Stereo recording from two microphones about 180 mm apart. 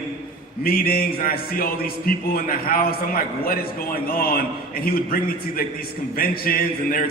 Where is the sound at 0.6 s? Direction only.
55° left (ahead or behind).